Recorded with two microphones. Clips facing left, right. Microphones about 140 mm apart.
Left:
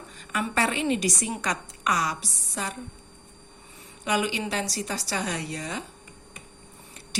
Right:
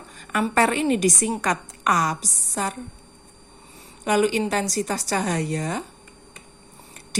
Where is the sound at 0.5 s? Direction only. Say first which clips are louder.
Right 5 dB; 50° right (ahead or behind).